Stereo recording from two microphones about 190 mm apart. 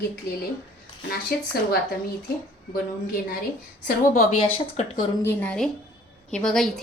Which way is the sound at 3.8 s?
50° left (ahead or behind).